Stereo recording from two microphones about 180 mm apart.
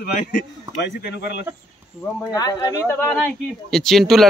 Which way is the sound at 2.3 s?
20° left (ahead or behind).